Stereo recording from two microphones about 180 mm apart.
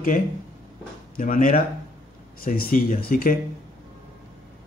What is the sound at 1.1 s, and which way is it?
Speech, 50° left (ahead or behind).